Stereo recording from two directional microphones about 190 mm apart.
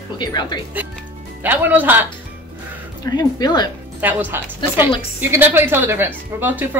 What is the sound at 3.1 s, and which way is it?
Speech, 20° left (ahead or behind).